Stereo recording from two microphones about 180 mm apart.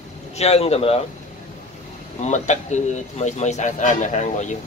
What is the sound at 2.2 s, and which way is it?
A man's voice, 40° left (ahead or behind).